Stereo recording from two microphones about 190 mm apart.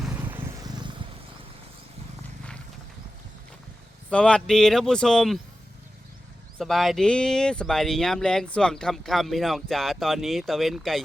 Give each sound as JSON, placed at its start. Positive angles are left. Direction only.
{"t": 0.0, "sound": "vehicle", "side_deg": -10}
{"t": 4.1, "sound": "speech", "side_deg": 5}
{"t": 6.6, "sound": "speech", "side_deg": 0}